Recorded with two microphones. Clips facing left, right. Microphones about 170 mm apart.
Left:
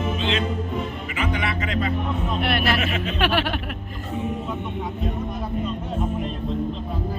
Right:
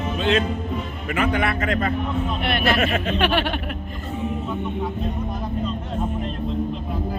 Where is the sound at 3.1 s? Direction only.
5° left (ahead or behind).